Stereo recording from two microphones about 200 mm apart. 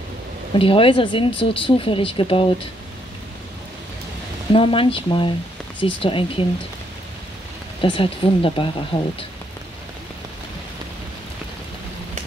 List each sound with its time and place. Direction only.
0.6 s speech: 25° left (ahead or behind)
4.5 s speech: 25° left (ahead or behind)
7.8 s speech: 25° left (ahead or behind)